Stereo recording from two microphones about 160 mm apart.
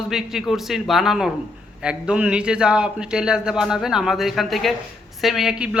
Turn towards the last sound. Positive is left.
turn(degrees=-5)  # may be behind; listen again after turning